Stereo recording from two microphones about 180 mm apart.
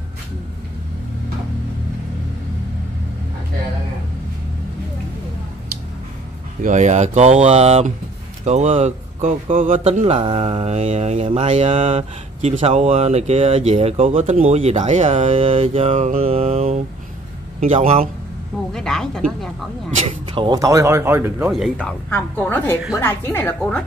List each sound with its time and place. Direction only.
6.6 s speech: 40° right (ahead or behind)
18.7 s speech: 5° left (ahead or behind)
20.0 s speech: 40° right (ahead or behind)
20.3 s speech: 25° right (ahead or behind)
21.7 s a woman's voice: 10° left (ahead or behind)